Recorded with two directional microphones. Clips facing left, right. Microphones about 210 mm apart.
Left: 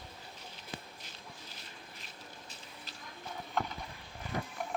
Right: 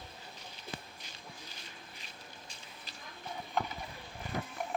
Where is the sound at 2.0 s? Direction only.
Centre (ahead or behind).